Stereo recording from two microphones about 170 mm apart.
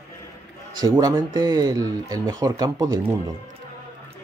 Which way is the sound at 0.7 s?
20° right (ahead or behind).